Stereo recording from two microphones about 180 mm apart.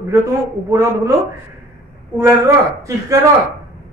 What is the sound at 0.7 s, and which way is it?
Speech, 15° right (ahead or behind).